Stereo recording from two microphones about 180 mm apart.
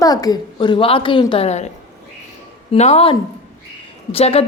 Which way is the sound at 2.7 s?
35° left (ahead or behind).